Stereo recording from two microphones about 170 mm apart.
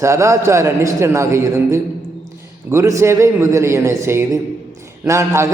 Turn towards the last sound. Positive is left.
turn(degrees=-20)  # may be behind; listen again after turning